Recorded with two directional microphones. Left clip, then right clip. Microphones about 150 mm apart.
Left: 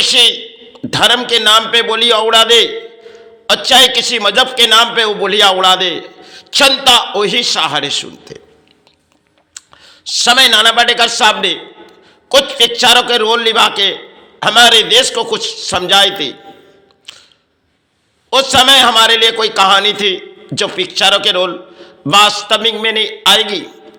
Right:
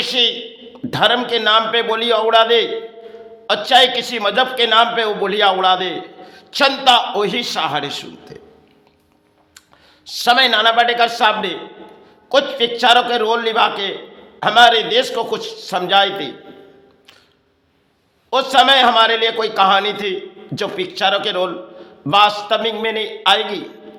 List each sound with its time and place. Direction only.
0.0 s a man's voice: 15° left (ahead or behind)
0.7 s a sound: 10° left (ahead or behind)
1.3 s a man's voice: 10° left (ahead or behind)
9.6 s a man's voice: 15° left (ahead or behind)
17.1 s a sound: 15° left (ahead or behind)
18.3 s a man's voice: 15° left (ahead or behind)